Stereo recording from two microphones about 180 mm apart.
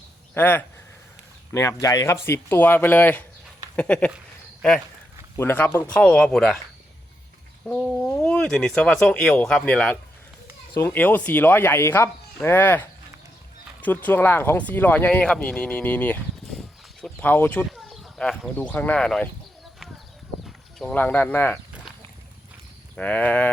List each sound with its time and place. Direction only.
0.3 s speech: 10° left (ahead or behind)
5.4 s speech: 10° left (ahead or behind)
7.7 s speech: centre (ahead or behind)
13.8 s speech: 10° left (ahead or behind)
20.7 s speech: 5° left (ahead or behind)
23.0 s speech: 10° left (ahead or behind)